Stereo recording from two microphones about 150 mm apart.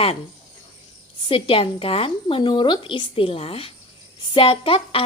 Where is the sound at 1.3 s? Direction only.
35° left (ahead or behind).